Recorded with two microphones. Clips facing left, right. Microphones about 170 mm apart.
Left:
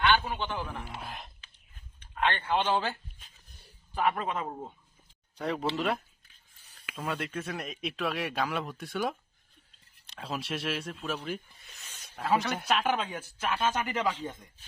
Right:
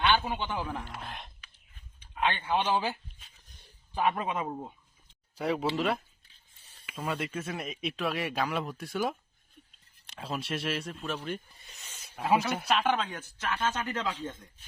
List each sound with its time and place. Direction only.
0.0 s a man's voice: 20° right (ahead or behind)
0.8 s speech: 5° left (ahead or behind)
1.5 s a sound: 10° right (ahead or behind)
3.9 s speech: 20° right (ahead or behind)
5.4 s speech: 5° right (ahead or behind)
6.2 s a sound: 25° right (ahead or behind)
6.9 s speech: centre (ahead or behind)
10.2 s speech: centre (ahead or behind)